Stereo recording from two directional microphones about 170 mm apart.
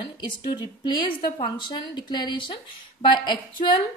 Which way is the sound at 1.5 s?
25° left (ahead or behind).